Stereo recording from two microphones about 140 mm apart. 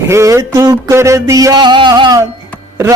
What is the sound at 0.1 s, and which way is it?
A man's voice, 20° right (ahead or behind).